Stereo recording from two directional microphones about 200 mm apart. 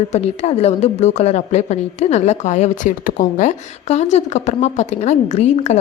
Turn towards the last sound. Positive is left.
turn(degrees=35)  # may be behind; listen again after turning